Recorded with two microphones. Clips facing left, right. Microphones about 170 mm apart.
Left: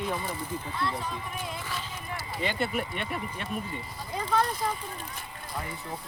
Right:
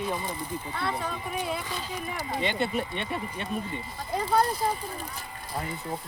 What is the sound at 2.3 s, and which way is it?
Speech, 20° right (ahead or behind).